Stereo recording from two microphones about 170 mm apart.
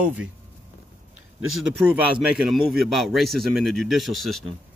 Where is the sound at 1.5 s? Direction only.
5° right (ahead or behind).